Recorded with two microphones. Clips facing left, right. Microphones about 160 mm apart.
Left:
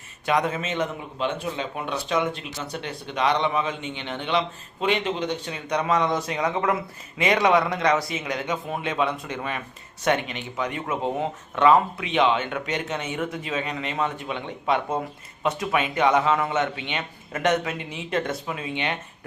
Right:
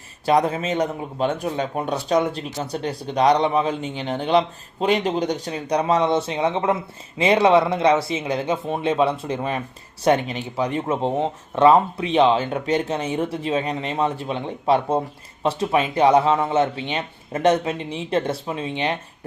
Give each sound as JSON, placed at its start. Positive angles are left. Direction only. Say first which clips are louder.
{"t": 0.3, "sound": "speech", "louder": "right 5 dB", "side_deg": -35}